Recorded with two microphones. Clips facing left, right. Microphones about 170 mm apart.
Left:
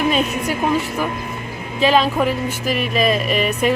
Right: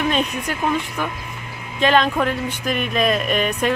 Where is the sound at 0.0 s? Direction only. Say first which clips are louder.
Left 3 dB; 5° left (ahead or behind).